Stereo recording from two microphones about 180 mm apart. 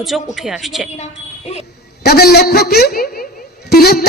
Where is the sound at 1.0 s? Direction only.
35° left (ahead or behind).